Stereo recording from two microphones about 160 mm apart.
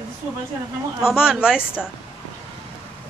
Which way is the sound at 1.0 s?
5° right (ahead or behind).